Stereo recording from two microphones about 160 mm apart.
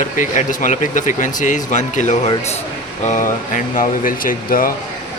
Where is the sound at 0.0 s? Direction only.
55° left (ahead or behind).